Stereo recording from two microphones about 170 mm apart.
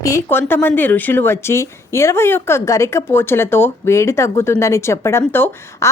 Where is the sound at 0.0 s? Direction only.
15° left (ahead or behind).